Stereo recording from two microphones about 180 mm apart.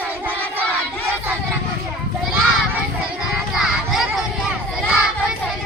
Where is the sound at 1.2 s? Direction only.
10° right (ahead or behind).